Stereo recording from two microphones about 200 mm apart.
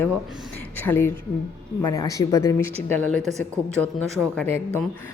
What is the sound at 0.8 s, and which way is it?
Speech, 10° left (ahead or behind).